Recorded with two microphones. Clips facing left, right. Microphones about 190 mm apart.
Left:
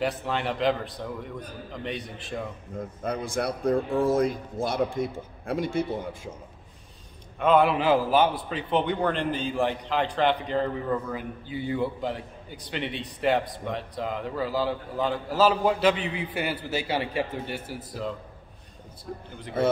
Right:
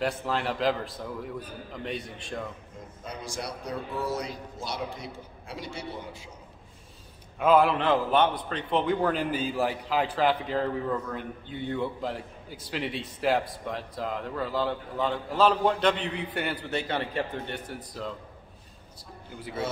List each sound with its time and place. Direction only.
0.0 s a man's voice: centre (ahead or behind)
3.0 s a man's voice: 55° left (ahead or behind)
7.3 s a man's voice: 5° right (ahead or behind)